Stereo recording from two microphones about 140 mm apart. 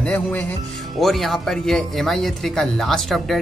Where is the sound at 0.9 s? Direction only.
Centre (ahead or behind).